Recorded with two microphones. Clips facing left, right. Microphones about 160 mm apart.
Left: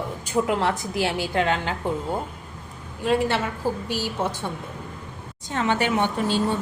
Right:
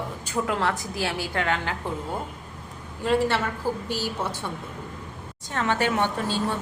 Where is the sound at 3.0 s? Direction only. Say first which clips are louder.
Left 1 dB; 15° left (ahead or behind).